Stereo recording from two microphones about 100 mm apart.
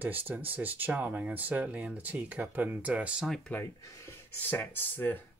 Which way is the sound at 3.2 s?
Centre (ahead or behind).